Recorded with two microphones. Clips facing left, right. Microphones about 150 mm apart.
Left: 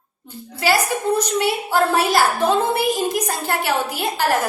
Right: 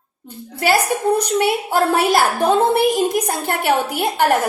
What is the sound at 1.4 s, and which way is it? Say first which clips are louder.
A woman's voice: right 2 dB; 55° right (ahead or behind).